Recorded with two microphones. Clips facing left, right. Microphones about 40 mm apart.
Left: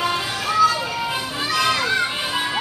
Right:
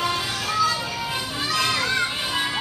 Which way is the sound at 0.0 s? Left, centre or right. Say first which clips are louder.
Left 2 dB; centre.